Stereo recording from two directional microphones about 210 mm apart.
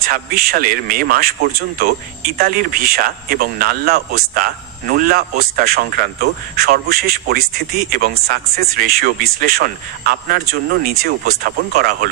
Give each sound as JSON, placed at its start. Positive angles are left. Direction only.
{"t": 0.0, "sound": "a man's voice", "side_deg": -45}